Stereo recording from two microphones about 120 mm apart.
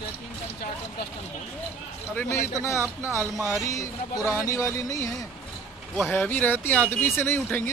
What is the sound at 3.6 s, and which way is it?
Speech, 25° left (ahead or behind).